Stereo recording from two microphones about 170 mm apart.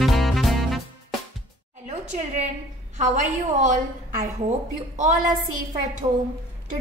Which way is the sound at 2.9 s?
50° right (ahead or behind).